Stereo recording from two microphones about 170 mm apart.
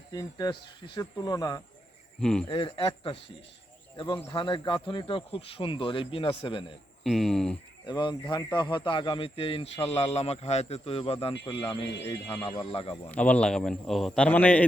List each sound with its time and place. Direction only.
0.1 s speech: 25° left (ahead or behind)
2.2 s speech: 5° left (ahead or behind)
2.5 s speech: 30° left (ahead or behind)
7.0 s speech: centre (ahead or behind)
7.9 s speech: 30° left (ahead or behind)
13.1 s a man's voice: 10° left (ahead or behind)